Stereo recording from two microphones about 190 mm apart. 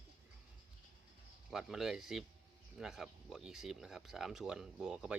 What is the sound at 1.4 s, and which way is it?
Speech, centre (ahead or behind).